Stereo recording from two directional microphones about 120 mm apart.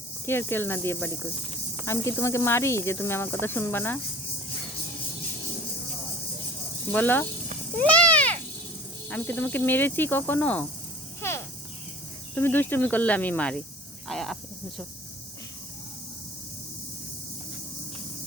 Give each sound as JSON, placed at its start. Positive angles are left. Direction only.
{"t": 0.3, "sound": "speech", "side_deg": 20}
{"t": 6.9, "sound": "speech", "side_deg": 15}
{"t": 7.8, "sound": "a sound", "side_deg": 10}
{"t": 9.0, "sound": "speech", "side_deg": 10}
{"t": 11.2, "sound": "a sound", "side_deg": 20}
{"t": 12.3, "sound": "speech", "side_deg": 15}
{"t": 14.1, "sound": "speech", "side_deg": 0}